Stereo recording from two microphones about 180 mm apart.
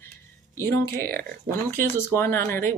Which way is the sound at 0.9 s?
55° right (ahead or behind).